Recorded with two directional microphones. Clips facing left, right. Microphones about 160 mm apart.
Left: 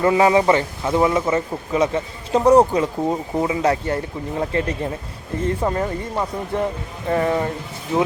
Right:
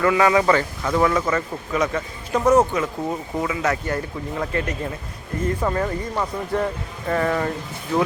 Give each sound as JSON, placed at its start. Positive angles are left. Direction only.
{"t": 0.0, "sound": "speech", "side_deg": 25}